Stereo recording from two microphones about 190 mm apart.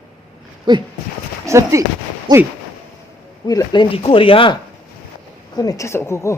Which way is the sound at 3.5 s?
20° left (ahead or behind).